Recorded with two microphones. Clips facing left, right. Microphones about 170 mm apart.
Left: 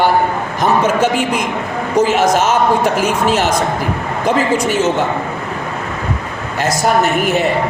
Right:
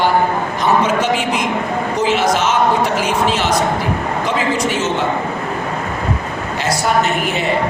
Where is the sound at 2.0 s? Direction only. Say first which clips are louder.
Left 4 dB; 45° left (ahead or behind).